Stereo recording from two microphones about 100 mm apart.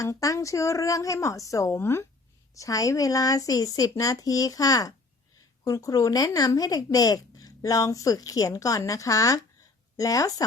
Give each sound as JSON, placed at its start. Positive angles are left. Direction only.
{"t": 0.0, "sound": "speech", "side_deg": 35}